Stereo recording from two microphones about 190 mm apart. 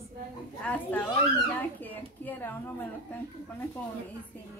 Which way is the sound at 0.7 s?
10° left (ahead or behind).